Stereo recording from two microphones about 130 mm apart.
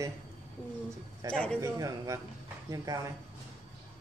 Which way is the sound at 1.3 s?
10° left (ahead or behind).